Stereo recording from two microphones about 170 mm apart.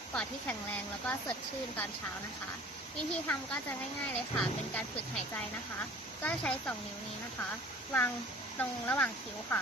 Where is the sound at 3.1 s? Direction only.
5° left (ahead or behind).